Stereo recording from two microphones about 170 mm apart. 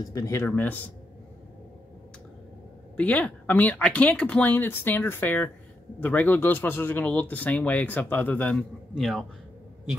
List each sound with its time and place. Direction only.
0.0 s speech: 20° left (ahead or behind)
3.0 s speech: 10° left (ahead or behind)